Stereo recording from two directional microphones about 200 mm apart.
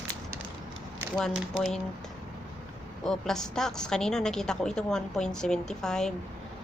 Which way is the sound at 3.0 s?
Centre (ahead or behind).